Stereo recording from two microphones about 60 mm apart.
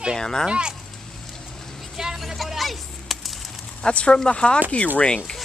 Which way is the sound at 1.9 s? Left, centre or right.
Centre.